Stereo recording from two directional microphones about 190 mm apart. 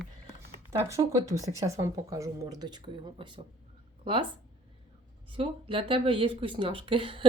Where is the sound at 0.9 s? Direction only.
15° right (ahead or behind).